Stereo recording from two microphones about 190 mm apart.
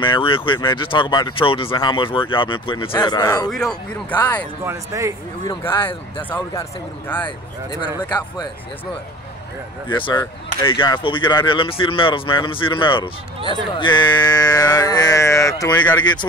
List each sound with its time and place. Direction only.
0.0 s speech: 25° left (ahead or behind)
3.5 s speech: 5° left (ahead or behind)
4.6 s speech: 15° right (ahead or behind)
5.5 s speech: 10° left (ahead or behind)
7.2 s speech: 25° left (ahead or behind)
9.8 s speech: 25° left (ahead or behind)